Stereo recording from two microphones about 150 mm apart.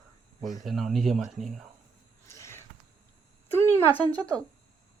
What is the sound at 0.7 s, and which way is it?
Speech, centre (ahead or behind).